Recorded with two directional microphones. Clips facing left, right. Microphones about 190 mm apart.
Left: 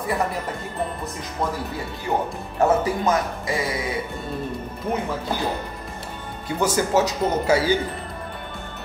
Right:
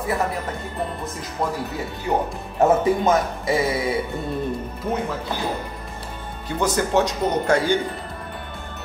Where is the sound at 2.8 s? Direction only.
25° right (ahead or behind).